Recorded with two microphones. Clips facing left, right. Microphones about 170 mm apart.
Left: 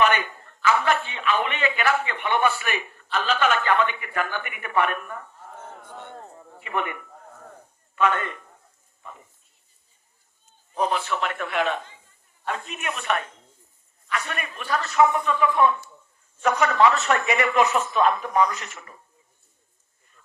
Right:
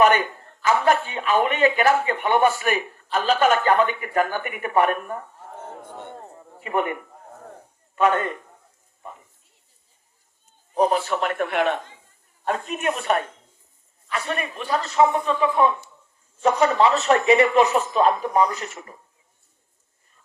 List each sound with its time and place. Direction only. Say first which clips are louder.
0.0 s a man's voice: right 4 dB; 40° right (ahead or behind)
6.1 s a sound: right 2 dB; 15° right (ahead or behind)
6.6 s a man's voice: right 5 dB; 40° right (ahead or behind)
10.8 s a man's voice: right 4 dB; 35° right (ahead or behind)
12.5 s a man's voice: right 6 dB; 40° right (ahead or behind)